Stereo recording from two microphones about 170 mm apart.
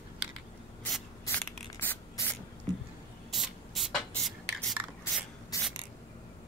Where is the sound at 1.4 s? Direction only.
10° left (ahead or behind).